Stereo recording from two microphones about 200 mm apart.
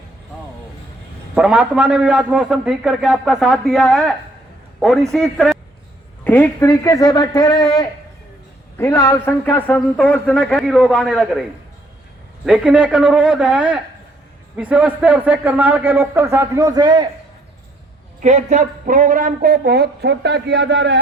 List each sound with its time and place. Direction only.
1.4 s a man's voice: 5° right (ahead or behind)
12.5 s a man's voice: 5° right (ahead or behind); by 17.1 s 20° right (ahead or behind)
18.2 s a woman's voice: 35° right (ahead or behind); by 21.0 s 65° right (ahead or behind)